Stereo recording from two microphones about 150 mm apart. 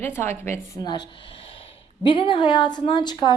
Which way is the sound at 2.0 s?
35° left (ahead or behind).